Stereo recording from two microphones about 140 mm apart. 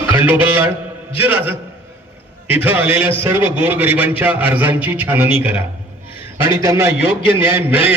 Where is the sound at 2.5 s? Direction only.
15° right (ahead or behind).